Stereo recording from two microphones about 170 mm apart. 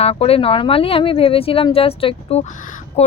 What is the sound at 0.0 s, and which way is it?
Speech, 35° left (ahead or behind).